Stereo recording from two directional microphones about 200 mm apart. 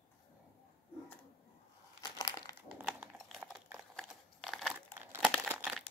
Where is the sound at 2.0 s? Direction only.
20° left (ahead or behind).